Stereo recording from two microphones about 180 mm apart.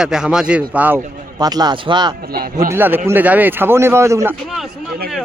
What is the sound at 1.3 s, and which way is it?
Speech, 20° right (ahead or behind).